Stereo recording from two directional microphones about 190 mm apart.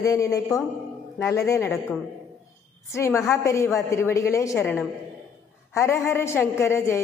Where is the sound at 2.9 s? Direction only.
15° left (ahead or behind).